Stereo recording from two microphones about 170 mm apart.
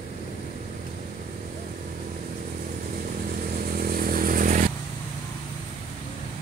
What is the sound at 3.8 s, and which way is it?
Motorcycle, 60° right (ahead or behind).